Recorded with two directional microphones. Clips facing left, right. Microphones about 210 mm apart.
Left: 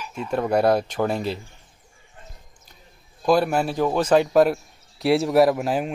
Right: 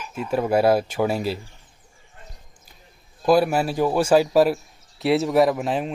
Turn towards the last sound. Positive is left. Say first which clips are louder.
# left 1 dB
turn(degrees=0)  # may be behind; listen again after turning